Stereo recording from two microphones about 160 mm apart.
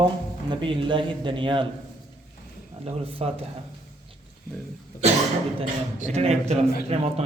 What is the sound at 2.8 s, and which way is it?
Speech, 35° right (ahead or behind).